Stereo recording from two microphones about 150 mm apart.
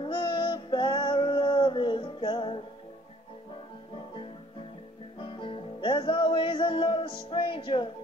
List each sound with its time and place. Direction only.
0.0 s music: 35° left (ahead or behind)
5.2 s music: 35° left (ahead or behind)